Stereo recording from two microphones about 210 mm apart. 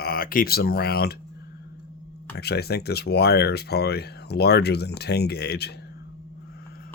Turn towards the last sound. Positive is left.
turn(degrees=50)  # may be behind; listen again after turning